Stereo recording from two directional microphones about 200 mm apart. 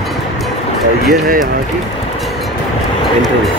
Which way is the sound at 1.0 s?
50° right (ahead or behind).